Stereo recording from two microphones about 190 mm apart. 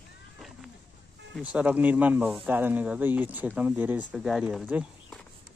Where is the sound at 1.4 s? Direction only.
10° right (ahead or behind).